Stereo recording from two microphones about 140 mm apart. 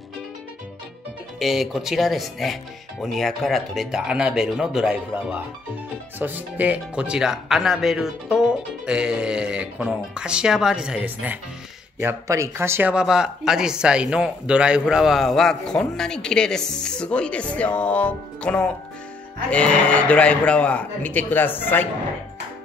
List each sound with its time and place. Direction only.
1.4 s speech: centre (ahead or behind)
12.0 s speech: 20° right (ahead or behind)
12.9 s a man's voice: 5° right (ahead or behind); by 21.8 s 15° left (ahead or behind)